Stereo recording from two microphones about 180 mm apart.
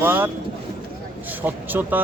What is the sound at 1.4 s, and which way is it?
Speech, 10° right (ahead or behind).